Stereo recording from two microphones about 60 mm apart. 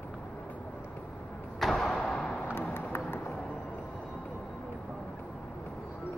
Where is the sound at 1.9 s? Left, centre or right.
Centre.